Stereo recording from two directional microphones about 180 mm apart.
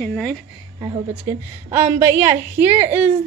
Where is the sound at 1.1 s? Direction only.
10° right (ahead or behind).